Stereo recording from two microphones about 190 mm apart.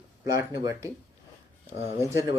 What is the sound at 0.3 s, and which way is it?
Speech, 15° right (ahead or behind).